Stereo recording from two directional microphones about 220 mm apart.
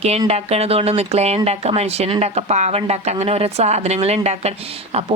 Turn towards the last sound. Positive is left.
turn(degrees=-30)  # may be behind; listen again after turning